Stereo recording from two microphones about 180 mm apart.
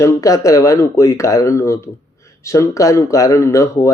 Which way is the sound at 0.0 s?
15° left (ahead or behind).